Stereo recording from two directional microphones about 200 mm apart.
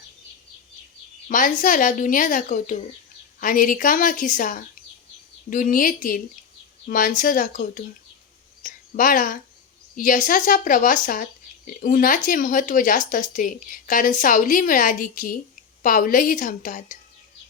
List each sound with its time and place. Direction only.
1.3 s a woman's voice: 40° left (ahead or behind)
8.6 s a sound: 40° left (ahead or behind)
9.9 s speech: 40° left (ahead or behind)